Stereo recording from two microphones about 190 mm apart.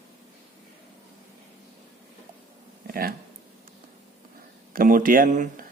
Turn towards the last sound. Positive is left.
turn(degrees=-45)  # may be behind; listen again after turning